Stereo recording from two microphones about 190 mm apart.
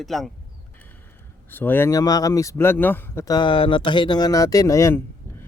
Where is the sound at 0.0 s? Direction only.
Centre (ahead or behind).